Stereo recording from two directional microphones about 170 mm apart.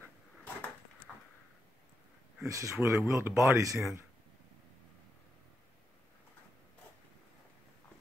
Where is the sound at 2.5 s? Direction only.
15° right (ahead or behind).